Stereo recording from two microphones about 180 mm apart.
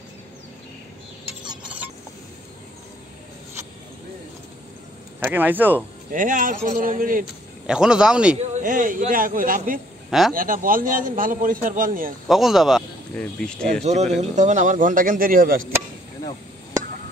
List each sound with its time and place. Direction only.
5.3 s speech: 10° right (ahead or behind)
6.1 s speech: 50° right (ahead or behind)
7.6 s a man's voice: 5° right (ahead or behind)
8.4 s speech: 45° right (ahead or behind)
12.3 s speech: centre (ahead or behind)
13.8 s speech: 40° right (ahead or behind)